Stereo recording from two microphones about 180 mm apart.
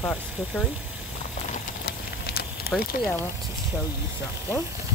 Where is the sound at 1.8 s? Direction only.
60° left (ahead or behind).